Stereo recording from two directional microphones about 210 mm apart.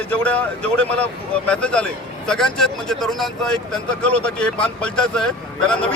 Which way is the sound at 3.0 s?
Centre (ahead or behind).